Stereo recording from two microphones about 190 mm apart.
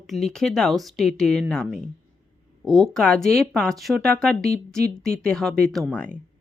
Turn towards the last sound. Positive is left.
turn(degrees=5)  # may be behind; listen again after turning